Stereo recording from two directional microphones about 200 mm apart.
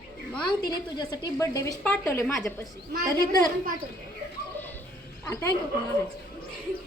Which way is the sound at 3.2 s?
20° left (ahead or behind).